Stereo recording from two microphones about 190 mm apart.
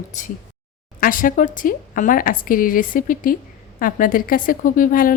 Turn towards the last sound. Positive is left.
turn(degrees=45)  # may be behind; listen again after turning